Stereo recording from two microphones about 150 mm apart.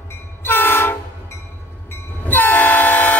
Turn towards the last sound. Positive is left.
turn(degrees=10)  # may be behind; listen again after turning